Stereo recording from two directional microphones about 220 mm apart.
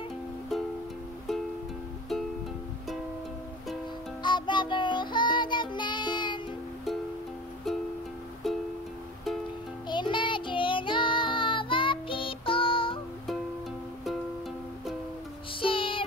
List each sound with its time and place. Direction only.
4.2 s music: 20° left (ahead or behind)
8.4 s music: centre (ahead or behind)
9.8 s child singing: 20° left (ahead or behind)
15.6 s music: 25° left (ahead or behind)